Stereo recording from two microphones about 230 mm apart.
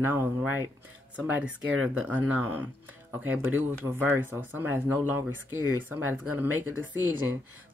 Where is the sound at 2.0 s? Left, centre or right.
Centre.